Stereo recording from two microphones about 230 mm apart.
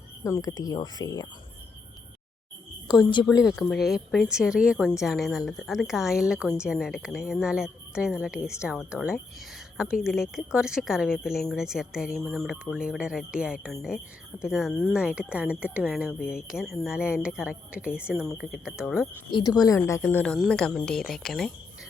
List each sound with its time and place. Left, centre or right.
0.3 s speech: centre
2.8 s a woman's voice: centre
3.4 s a woman's voice: centre
19.3 s a woman's voice: centre